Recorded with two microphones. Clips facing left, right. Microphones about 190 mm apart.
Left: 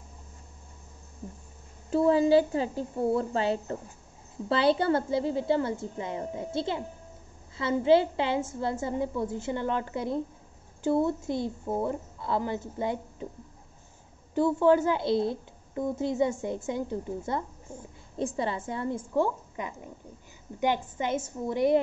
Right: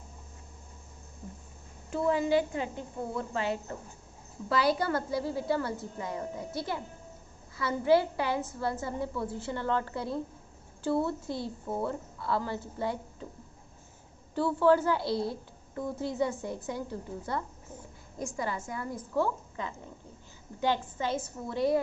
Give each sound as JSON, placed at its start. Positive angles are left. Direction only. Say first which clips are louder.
{"t": 1.9, "sound": "a woman's voice", "louder": "left 6 dB", "side_deg": 30}
{"t": 14.3, "sound": "a woman's voice", "louder": "left 2 dB", "side_deg": 20}